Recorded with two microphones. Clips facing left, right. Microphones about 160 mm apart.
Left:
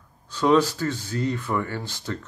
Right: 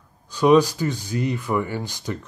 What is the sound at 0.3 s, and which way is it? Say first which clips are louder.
Speech: right 4 dB; 15° right (ahead or behind).